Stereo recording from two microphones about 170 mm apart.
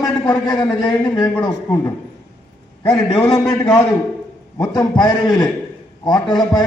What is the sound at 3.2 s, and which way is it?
Speech, 25° left (ahead or behind).